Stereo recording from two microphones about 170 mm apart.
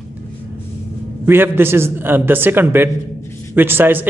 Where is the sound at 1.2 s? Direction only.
10° right (ahead or behind).